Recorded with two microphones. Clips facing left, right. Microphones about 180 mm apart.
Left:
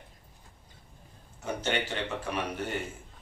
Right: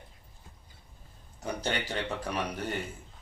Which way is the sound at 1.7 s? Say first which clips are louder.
Left 4 dB; 35° right (ahead or behind).